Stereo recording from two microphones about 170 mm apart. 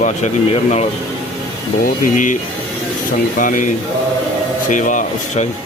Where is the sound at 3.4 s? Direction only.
50° left (ahead or behind).